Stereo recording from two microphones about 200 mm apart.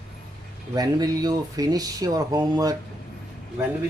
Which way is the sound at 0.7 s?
20° right (ahead or behind).